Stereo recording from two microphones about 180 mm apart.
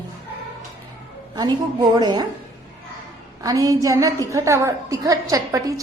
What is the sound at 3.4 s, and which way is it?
A woman's voice, 20° right (ahead or behind).